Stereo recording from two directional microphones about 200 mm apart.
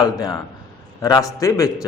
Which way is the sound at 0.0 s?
20° left (ahead or behind).